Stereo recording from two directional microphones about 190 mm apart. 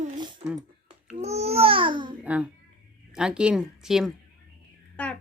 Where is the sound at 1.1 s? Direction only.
35° right (ahead or behind).